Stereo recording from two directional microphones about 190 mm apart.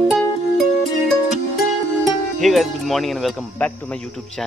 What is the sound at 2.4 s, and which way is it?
Speech, centre (ahead or behind).